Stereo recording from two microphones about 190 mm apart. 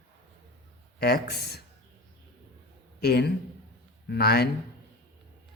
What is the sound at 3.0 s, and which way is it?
Speech, 60° left (ahead or behind).